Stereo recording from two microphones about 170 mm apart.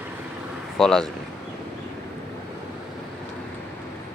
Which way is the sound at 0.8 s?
5° left (ahead or behind).